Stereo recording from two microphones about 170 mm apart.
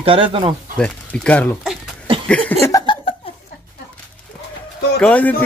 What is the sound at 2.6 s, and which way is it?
Chuckle, 20° left (ahead or behind).